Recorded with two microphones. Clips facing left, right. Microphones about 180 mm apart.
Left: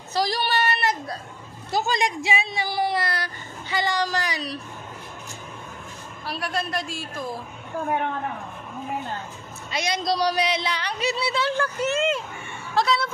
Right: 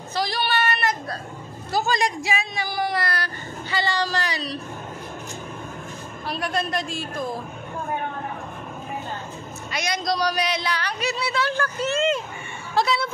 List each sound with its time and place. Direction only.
0.1 s child singing: 40° left (ahead or behind)
1.7 s speech: 20° left (ahead or behind)
6.2 s a man's voice: 5° left (ahead or behind)
9.7 s speech: 25° left (ahead or behind)
12.7 s a man's voice: 5° right (ahead or behind)